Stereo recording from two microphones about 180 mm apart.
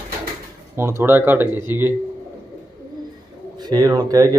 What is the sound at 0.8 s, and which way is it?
Speech, 15° right (ahead or behind).